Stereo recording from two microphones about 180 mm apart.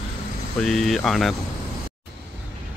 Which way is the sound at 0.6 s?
Centre (ahead or behind).